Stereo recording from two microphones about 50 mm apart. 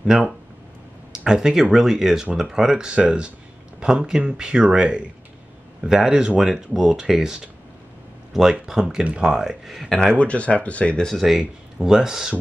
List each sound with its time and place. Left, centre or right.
0.0 s speech: centre
9.8 s speech: centre
11.1 s speech: centre